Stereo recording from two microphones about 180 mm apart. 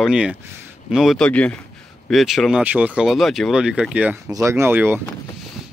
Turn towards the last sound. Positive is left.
turn(degrees=-10)  # may be behind; listen again after turning